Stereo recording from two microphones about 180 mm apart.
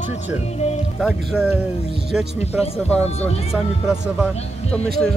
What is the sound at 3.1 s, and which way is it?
Speech, 35° left (ahead or behind).